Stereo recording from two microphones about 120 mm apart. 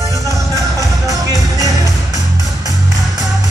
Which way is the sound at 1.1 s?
30° right (ahead or behind).